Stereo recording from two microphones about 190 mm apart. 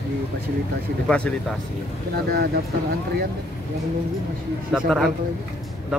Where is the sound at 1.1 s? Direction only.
5° left (ahead or behind).